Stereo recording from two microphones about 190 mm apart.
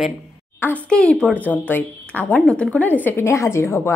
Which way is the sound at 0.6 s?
10° left (ahead or behind).